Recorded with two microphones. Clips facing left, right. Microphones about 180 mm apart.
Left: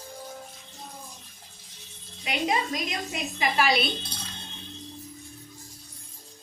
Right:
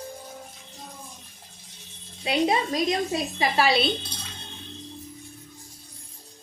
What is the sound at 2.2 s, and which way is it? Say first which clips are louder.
A woman's voice: right 4 dB; 30° right (ahead or behind).